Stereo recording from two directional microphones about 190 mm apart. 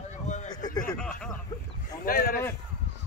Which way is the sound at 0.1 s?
40° left (ahead or behind).